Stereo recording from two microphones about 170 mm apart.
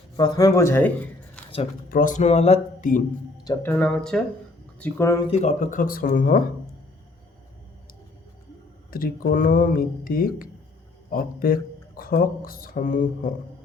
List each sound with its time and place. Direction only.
0.2 s speech: 20° left (ahead or behind)
1.4 s a sound: 5° left (ahead or behind)
1.9 s speech: 50° left (ahead or behind)
3.4 s speech: 15° left (ahead or behind)
4.8 s speech: 15° left (ahead or behind)
5.3 s speech: 45° left (ahead or behind)
8.9 s speech: 55° left (ahead or behind)